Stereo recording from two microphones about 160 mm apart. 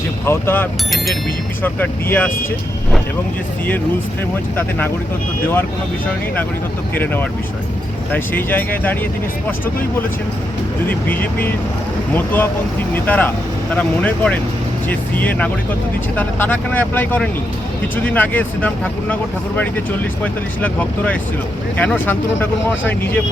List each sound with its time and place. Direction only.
0.3 s speech: 15° left (ahead or behind)
6.9 s speech: 10° left (ahead or behind)
10.8 s speech: 10° left (ahead or behind)
20.2 s speech: 10° left (ahead or behind)